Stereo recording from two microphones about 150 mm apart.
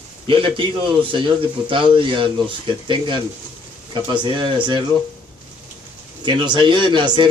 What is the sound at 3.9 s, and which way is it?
Speech, 30° right (ahead or behind).